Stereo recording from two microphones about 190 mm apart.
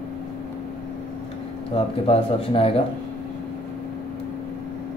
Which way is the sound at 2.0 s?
30° left (ahead or behind).